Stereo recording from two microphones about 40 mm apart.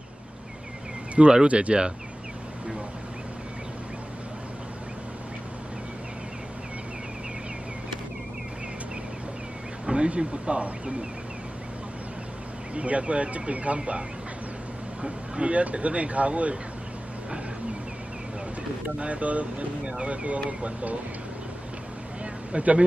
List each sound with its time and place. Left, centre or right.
1.1 s speech: right
9.8 s speech: right
12.7 s speech: right
18.9 s speech: right
22.2 s a sound: right